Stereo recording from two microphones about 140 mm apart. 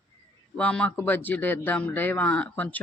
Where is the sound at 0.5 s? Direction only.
5° left (ahead or behind).